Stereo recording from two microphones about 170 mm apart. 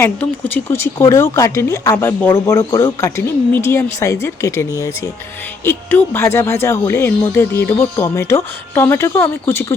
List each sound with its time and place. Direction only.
0.0 s speech: 15° left (ahead or behind)
5.6 s speech: 15° left (ahead or behind)